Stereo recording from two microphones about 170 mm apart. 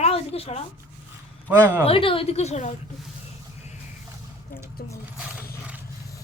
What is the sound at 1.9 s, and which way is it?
Speech, 30° left (ahead or behind).